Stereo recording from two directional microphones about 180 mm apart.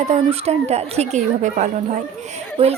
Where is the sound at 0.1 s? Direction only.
35° right (ahead or behind).